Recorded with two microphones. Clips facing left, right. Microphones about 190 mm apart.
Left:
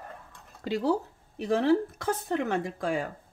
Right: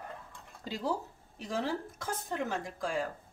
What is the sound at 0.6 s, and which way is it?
A woman's voice, 70° left (ahead or behind).